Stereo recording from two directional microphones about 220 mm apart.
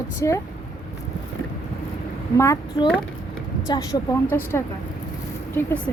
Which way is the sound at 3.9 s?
20° left (ahead or behind).